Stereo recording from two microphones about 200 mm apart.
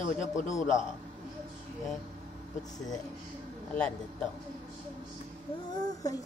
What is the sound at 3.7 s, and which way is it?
Speech, 5° left (ahead or behind).